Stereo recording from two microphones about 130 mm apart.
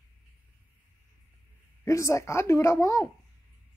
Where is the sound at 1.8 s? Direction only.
25° left (ahead or behind).